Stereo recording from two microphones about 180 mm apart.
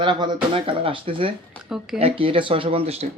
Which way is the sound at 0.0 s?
25° right (ahead or behind).